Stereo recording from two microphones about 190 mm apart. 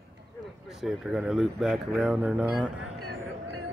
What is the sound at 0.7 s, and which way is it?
Speech, 5° right (ahead or behind).